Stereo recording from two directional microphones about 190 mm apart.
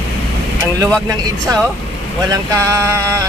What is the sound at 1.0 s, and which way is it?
Speech, 20° right (ahead or behind).